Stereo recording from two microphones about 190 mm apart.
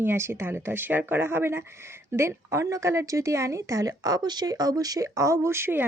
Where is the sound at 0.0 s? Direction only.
10° right (ahead or behind).